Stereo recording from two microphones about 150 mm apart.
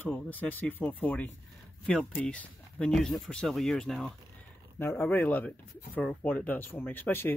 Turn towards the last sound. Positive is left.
turn(degrees=15)  # may be behind; listen again after turning